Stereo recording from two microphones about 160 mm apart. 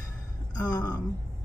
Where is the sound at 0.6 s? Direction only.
25° left (ahead or behind).